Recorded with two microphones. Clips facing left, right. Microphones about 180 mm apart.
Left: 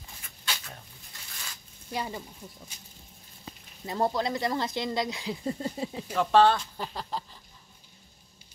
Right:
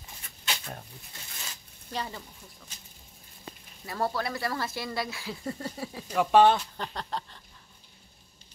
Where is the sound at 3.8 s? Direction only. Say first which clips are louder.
Left 3 dB; 20° left (ahead or behind).